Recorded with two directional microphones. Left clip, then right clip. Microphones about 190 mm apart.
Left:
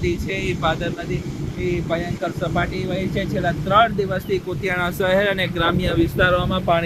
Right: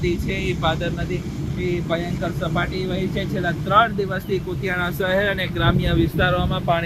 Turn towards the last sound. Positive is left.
turn(degrees=55)  # may be behind; listen again after turning